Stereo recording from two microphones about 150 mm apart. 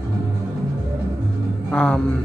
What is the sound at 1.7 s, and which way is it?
Speech, 5° left (ahead or behind).